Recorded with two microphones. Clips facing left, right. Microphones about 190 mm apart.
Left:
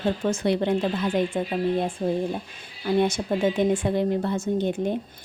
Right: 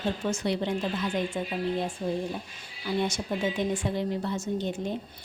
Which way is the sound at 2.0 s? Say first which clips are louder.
Left 5 dB; 50° left (ahead or behind).